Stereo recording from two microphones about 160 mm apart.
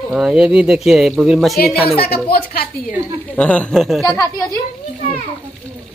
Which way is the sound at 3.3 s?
10° left (ahead or behind).